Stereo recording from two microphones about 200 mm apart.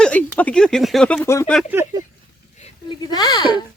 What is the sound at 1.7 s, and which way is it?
Speech, 15° right (ahead or behind).